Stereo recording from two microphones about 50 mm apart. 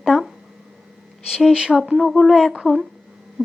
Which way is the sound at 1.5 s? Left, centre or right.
Centre.